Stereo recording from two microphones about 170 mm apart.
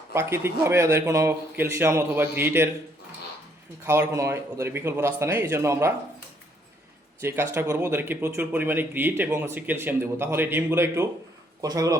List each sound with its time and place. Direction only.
0.1 s speech: 15° right (ahead or behind)
3.8 s speech: 15° right (ahead or behind)
7.2 s speech: 15° right (ahead or behind)